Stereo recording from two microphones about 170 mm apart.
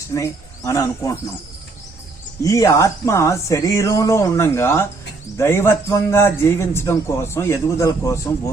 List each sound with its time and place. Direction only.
0.1 s a man's voice: 15° left (ahead or behind)
2.4 s a man's voice: 20° left (ahead or behind)